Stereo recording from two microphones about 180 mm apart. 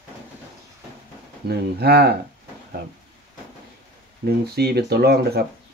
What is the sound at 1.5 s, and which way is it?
Speech, 60° right (ahead or behind).